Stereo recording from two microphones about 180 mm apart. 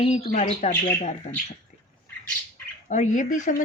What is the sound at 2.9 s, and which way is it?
Speech, 40° left (ahead or behind).